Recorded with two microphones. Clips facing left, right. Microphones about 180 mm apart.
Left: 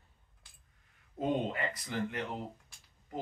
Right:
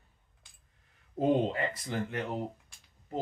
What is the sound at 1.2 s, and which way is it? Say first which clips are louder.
Speech: right 5 dB; 30° right (ahead or behind).